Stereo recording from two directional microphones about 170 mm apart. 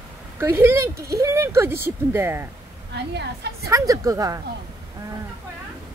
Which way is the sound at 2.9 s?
75° right (ahead or behind).